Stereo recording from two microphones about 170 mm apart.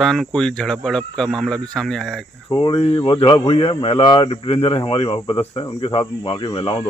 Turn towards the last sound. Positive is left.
turn(degrees=30)  # may be behind; listen again after turning